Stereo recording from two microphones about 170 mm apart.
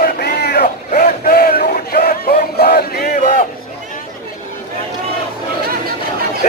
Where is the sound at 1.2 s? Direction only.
60° left (ahead or behind).